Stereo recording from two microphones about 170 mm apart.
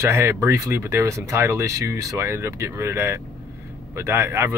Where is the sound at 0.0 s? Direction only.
15° right (ahead or behind).